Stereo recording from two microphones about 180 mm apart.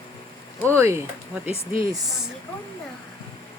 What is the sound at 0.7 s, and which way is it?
Speech, 15° right (ahead or behind).